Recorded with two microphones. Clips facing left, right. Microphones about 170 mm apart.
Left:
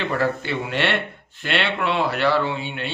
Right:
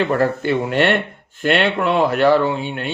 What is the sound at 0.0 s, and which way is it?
Speech, 45° right (ahead or behind).